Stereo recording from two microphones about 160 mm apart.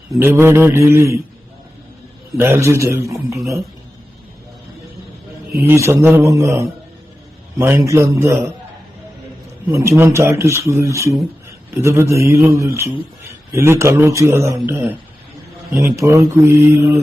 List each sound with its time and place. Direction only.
0.2 s speech: 15° right (ahead or behind)
2.4 s speech: 15° right (ahead or behind)
5.6 s speech: 20° right (ahead or behind)
9.6 s speech: 15° right (ahead or behind)